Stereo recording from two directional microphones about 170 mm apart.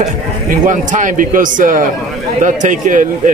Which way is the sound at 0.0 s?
45° right (ahead or behind).